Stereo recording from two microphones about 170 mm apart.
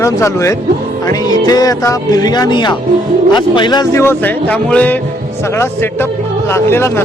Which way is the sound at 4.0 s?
10° left (ahead or behind).